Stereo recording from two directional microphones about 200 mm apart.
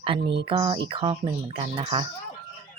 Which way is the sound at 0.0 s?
25° right (ahead or behind).